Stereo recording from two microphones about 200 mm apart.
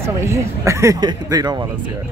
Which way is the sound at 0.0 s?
15° right (ahead or behind).